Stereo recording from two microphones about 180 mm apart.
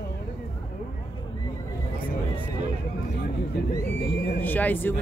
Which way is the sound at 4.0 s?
65° left (ahead or behind).